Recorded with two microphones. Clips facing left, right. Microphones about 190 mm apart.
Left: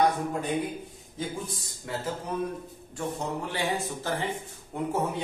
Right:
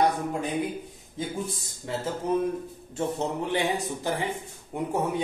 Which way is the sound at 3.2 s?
20° right (ahead or behind).